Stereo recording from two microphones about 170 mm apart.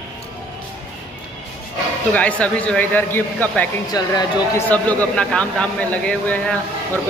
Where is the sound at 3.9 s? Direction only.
20° left (ahead or behind).